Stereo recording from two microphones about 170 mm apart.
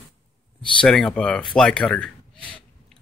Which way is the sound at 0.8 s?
5° left (ahead or behind).